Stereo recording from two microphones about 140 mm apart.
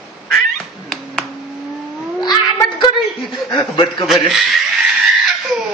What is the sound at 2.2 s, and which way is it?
Cat, 30° left (ahead or behind).